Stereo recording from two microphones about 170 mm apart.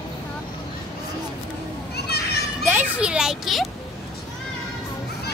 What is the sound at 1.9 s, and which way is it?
Children playing, 70° left (ahead or behind).